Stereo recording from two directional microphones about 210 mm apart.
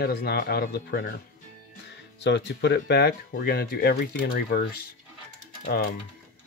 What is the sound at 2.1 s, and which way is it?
Speech, 55° left (ahead or behind).